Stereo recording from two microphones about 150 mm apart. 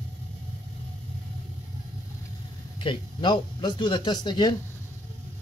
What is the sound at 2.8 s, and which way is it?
Speech, 35° left (ahead or behind).